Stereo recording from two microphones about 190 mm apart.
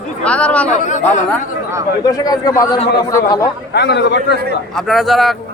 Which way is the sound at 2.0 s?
20° left (ahead or behind).